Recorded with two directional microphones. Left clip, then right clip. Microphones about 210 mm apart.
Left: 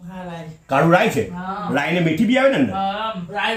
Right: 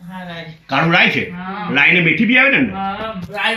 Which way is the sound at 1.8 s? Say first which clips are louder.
Right 9 dB; 50° left (ahead or behind).